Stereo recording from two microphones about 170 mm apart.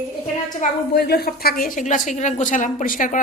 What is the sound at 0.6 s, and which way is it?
A woman's voice, 65° left (ahead or behind).